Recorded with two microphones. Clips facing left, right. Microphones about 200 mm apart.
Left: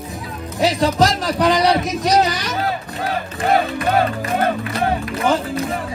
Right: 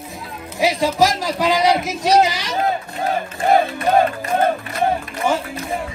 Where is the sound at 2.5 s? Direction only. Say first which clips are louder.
Right 2 dB; 20° right (ahead or behind).